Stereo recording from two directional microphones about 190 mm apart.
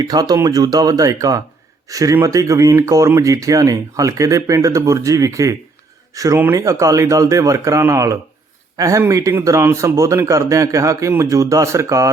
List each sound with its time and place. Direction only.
0.0 s speech: 20° right (ahead or behind)